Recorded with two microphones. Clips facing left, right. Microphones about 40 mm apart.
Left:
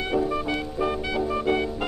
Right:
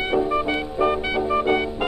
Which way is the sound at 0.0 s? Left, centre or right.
Right.